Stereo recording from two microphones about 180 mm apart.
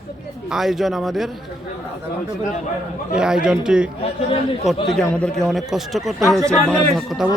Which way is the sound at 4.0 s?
30° left (ahead or behind).